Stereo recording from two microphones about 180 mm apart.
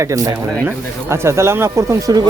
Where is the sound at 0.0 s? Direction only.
15° right (ahead or behind).